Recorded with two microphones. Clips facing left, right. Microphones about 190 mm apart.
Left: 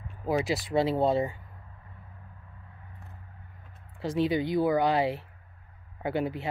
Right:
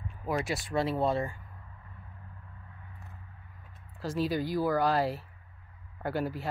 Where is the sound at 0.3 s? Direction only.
30° left (ahead or behind).